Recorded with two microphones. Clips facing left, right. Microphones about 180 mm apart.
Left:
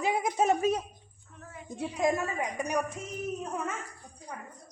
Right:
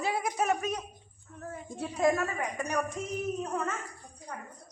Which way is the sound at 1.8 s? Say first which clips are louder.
Right 1 dB; 15° left (ahead or behind).